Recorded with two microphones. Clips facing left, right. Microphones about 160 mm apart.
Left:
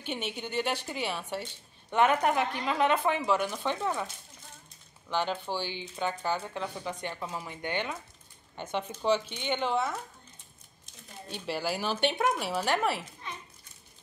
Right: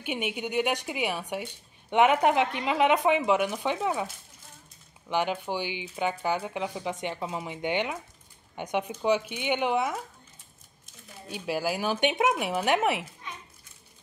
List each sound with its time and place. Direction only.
0.0 s speech: 10° right (ahead or behind)
5.1 s speech: 15° right (ahead or behind)
11.2 s speech: 10° right (ahead or behind)